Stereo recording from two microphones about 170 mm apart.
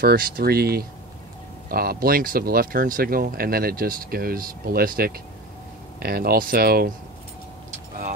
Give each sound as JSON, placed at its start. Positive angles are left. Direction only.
{"t": 0.0, "sound": "speech", "side_deg": -60}